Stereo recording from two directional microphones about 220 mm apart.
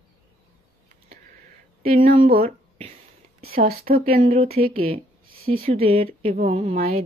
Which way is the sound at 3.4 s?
45° right (ahead or behind).